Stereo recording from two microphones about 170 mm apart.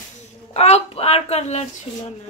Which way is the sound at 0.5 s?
40° left (ahead or behind).